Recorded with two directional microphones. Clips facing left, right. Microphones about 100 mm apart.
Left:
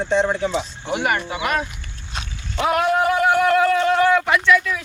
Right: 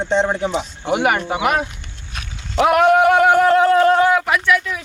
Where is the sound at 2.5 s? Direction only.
60° right (ahead or behind).